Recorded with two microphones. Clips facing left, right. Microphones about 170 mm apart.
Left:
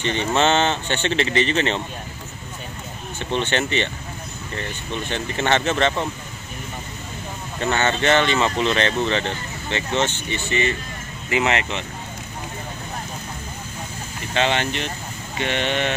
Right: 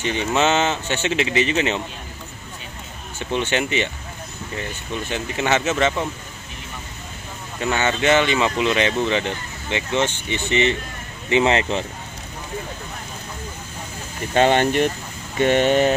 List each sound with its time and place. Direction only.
0.0 s speech: 10° right (ahead or behind)
3.3 s speech: 10° right (ahead or behind)
7.7 s speech: 10° right (ahead or behind); by 11.8 s 30° right (ahead or behind)
14.3 s speech: 45° right (ahead or behind)